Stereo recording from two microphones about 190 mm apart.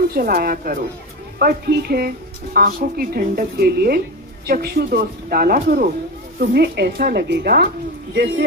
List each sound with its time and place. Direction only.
0.1 s speech: 50° right (ahead or behind)
6.4 s a woman's voice: 60° right (ahead or behind)